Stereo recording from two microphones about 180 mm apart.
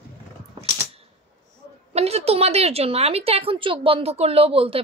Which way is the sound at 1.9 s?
35° right (ahead or behind).